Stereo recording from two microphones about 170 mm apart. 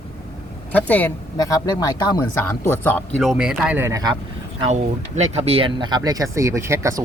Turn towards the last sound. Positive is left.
turn(degrees=-15)  # may be behind; listen again after turning